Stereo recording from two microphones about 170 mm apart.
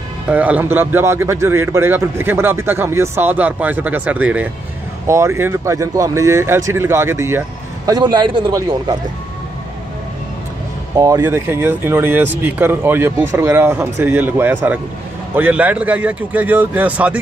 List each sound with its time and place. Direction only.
0.3 s a man's voice: 10° right (ahead or behind); by 8.9 s 25° right (ahead or behind)
11.0 s a man's voice: 15° right (ahead or behind)